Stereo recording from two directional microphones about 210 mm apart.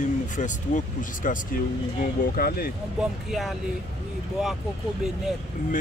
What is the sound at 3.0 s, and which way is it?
Speech, centre (ahead or behind).